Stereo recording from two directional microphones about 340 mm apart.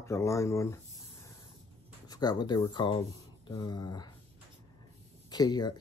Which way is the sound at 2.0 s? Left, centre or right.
Centre.